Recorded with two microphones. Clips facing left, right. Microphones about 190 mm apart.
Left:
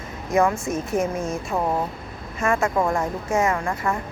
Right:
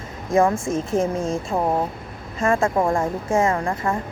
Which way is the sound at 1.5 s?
20° right (ahead or behind).